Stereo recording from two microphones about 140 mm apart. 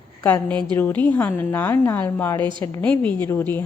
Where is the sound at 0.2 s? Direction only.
20° left (ahead or behind).